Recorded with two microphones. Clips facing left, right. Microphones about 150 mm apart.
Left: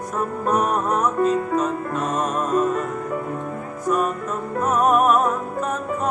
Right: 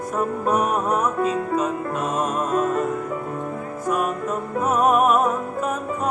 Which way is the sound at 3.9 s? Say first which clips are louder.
Left 1 dB; 5° right (ahead or behind).